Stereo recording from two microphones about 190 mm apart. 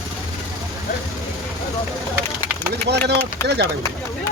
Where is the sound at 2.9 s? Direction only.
60° right (ahead or behind).